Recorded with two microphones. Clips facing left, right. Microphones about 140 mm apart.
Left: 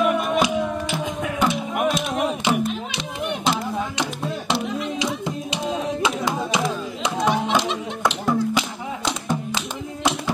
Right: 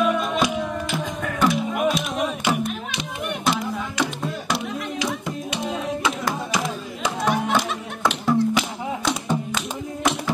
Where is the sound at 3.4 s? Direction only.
25° left (ahead or behind).